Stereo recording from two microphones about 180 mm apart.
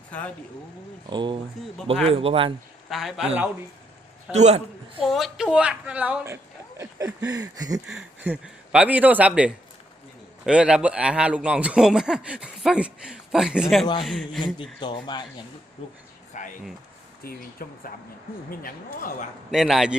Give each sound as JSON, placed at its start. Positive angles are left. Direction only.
{"t": 1.1, "sound": "speech", "side_deg": -25}
{"t": 2.9, "sound": "a man's voice", "side_deg": 0}
{"t": 4.3, "sound": "speech", "side_deg": -40}
{"t": 5.0, "sound": "a woman's voice", "side_deg": 0}
{"t": 7.9, "sound": "a woman's voice", "side_deg": -5}
{"t": 14.4, "sound": "speech", "side_deg": 25}
{"t": 16.3, "sound": "a sound", "side_deg": 45}
{"t": 17.2, "sound": "speech", "side_deg": 55}
{"t": 19.5, "sound": "a man's voice", "side_deg": 0}